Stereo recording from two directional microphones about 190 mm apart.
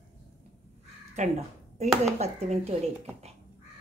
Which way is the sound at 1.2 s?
40° right (ahead or behind).